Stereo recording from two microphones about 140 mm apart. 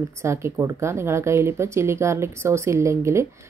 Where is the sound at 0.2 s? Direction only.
20° right (ahead or behind).